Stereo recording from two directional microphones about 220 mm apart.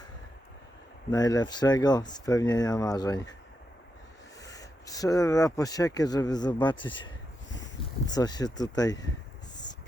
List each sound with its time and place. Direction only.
1.1 s speech: 15° left (ahead or behind)
4.5 s speech: 15° left (ahead or behind)
8.1 s speech: 15° left (ahead or behind)